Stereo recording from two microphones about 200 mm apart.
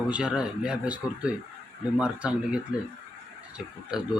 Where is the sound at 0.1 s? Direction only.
5° right (ahead or behind).